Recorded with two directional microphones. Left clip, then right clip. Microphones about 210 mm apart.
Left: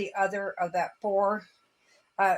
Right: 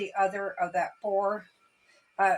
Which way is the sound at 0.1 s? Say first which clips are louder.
Right 2 dB; 45° left (ahead or behind).